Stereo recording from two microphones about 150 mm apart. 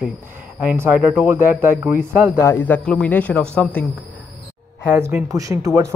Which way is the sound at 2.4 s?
15° left (ahead or behind).